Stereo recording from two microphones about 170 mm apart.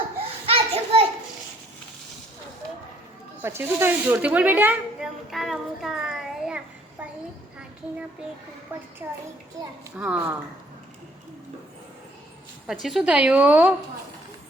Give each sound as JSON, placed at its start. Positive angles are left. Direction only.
{"t": 0.4, "sound": "children playing", "side_deg": -35}
{"t": 3.4, "sound": "speech", "side_deg": -15}
{"t": 8.7, "sound": "speech", "side_deg": -10}
{"t": 9.6, "sound": "a child's voice", "side_deg": -20}
{"t": 10.0, "sound": "speech", "side_deg": -10}
{"t": 12.6, "sound": "a woman's voice", "side_deg": 0}